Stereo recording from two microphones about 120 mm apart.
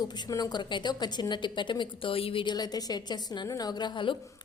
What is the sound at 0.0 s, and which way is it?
A woman's voice, 35° left (ahead or behind).